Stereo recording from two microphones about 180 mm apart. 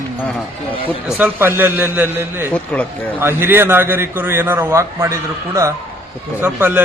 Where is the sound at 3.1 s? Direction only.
10° right (ahead or behind).